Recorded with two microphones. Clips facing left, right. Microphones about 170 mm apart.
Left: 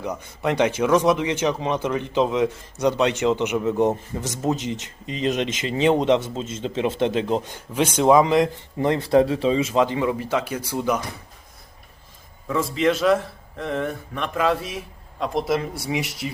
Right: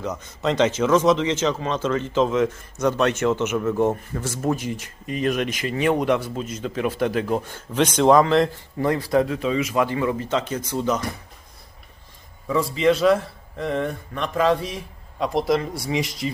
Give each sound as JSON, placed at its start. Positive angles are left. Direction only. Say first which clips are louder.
{"t": 0.0, "sound": "speech", "louder": "even", "side_deg": 10}
{"t": 8.9, "sound": "speech", "louder": "left 3 dB", "side_deg": 25}
{"t": 12.5, "sound": "a man's voice", "louder": "right 2 dB", "side_deg": 0}
{"t": 16.0, "sound": "speech", "louder": "right 3 dB", "side_deg": 70}